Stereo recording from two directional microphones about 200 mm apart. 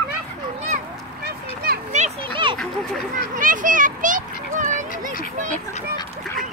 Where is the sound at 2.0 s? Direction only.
25° right (ahead or behind).